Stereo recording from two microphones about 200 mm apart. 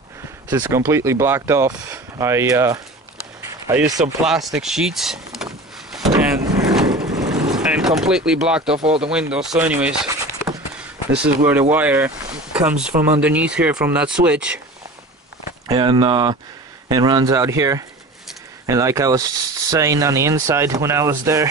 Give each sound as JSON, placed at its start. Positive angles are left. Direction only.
{"t": 0.5, "sound": "speech", "side_deg": -10}
{"t": 4.6, "sound": "vehicle", "side_deg": 0}
{"t": 7.0, "sound": "vehicle", "side_deg": -15}
{"t": 7.5, "sound": "vehicle", "side_deg": -5}
{"t": 8.3, "sound": "speech", "side_deg": -5}
{"t": 11.1, "sound": "speech", "side_deg": -10}
{"t": 15.7, "sound": "speech", "side_deg": -25}